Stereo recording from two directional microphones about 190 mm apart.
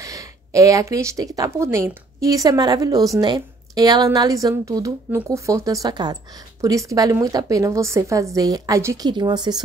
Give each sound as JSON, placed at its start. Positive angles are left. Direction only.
{"t": 0.0, "sound": "a woman's voice", "side_deg": -15}